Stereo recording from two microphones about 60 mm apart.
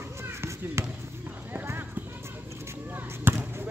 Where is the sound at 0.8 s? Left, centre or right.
Right.